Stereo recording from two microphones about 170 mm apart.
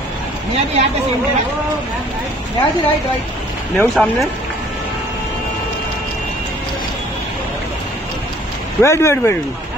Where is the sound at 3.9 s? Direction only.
Centre (ahead or behind).